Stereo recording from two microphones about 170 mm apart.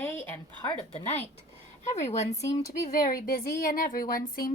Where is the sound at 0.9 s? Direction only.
40° left (ahead or behind).